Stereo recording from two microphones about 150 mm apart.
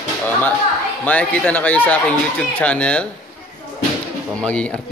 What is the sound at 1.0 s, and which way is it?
A man's voice, 10° left (ahead or behind).